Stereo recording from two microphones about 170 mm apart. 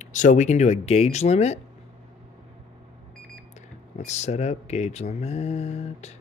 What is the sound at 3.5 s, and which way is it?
Speech, 45° left (ahead or behind).